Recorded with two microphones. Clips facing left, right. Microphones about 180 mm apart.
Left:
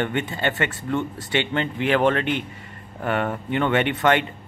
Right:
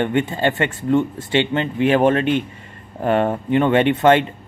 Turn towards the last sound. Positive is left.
turn(degrees=-25)  # may be behind; listen again after turning